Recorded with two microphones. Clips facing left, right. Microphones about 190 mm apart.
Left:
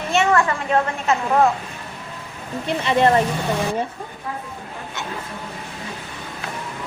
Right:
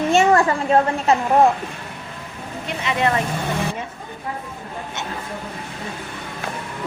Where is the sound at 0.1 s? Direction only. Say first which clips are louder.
Right 2 dB; 35° right (ahead or behind).